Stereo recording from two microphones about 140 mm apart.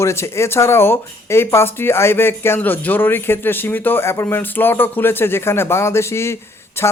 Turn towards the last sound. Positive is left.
turn(degrees=20)  # may be behind; listen again after turning